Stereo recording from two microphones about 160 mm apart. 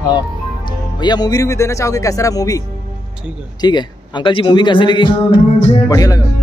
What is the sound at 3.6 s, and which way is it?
Speech, 30° left (ahead or behind).